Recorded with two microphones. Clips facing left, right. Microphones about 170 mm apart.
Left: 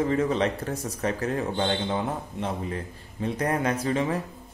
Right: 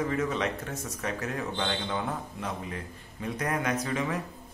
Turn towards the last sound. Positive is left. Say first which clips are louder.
# left 4 dB
turn(degrees=30)  # may be behind; listen again after turning